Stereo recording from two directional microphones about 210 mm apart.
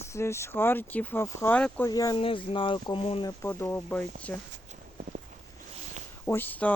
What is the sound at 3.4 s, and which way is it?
Speech, 15° left (ahead or behind).